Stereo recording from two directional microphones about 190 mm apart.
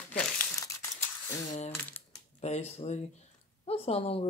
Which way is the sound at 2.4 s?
35° left (ahead or behind).